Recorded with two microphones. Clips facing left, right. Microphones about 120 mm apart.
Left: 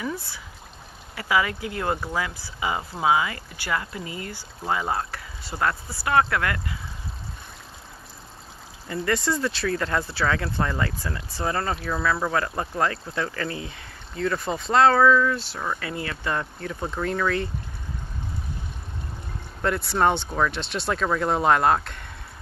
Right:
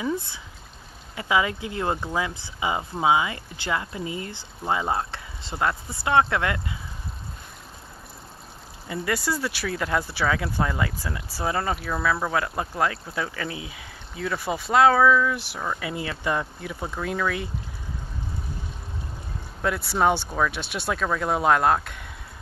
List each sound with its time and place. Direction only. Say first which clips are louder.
0.0 s speech: right 3 dB; 20° right (ahead or behind)
8.8 s speech: left 2 dB; 10° right (ahead or behind)
19.6 s speech: left 1 dB; 5° right (ahead or behind)